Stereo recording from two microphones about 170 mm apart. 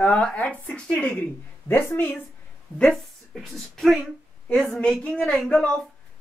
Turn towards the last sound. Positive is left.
turn(degrees=5)  # may be behind; listen again after turning